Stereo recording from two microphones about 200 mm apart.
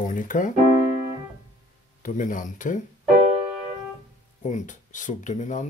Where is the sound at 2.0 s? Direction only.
40° left (ahead or behind).